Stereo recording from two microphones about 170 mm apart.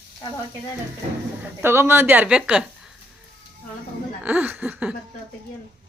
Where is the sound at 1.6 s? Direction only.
15° right (ahead or behind).